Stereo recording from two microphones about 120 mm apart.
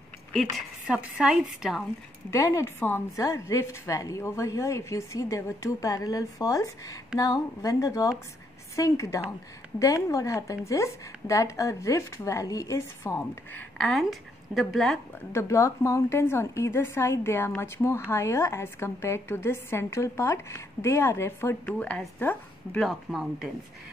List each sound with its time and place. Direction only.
0.8 s a woman's voice: 10° right (ahead or behind)
2.3 s speech: 25° left (ahead or behind)
14.5 s speech: centre (ahead or behind)
15.3 s speech: 25° left (ahead or behind)
21.6 s speech: 10° left (ahead or behind)
22.8 s speech: centre (ahead or behind)